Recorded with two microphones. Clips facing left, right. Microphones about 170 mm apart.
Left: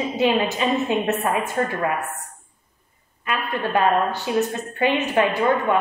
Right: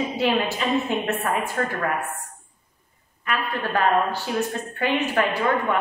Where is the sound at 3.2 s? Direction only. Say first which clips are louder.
Left 1 dB; 20° left (ahead or behind).